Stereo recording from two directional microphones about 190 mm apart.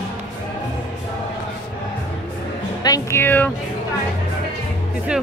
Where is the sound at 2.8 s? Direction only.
15° left (ahead or behind).